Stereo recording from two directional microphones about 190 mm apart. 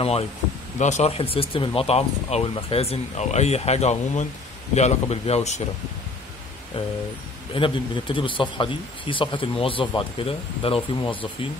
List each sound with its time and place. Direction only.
0.7 s speech: 40° left (ahead or behind)
7.5 s speech: 25° left (ahead or behind)